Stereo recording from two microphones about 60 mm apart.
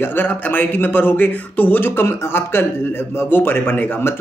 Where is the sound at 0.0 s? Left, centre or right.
Left.